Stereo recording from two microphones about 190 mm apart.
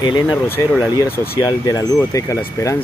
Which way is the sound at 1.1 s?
50° left (ahead or behind).